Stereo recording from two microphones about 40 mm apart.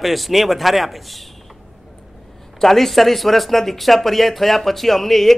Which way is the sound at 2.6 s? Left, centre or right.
Centre.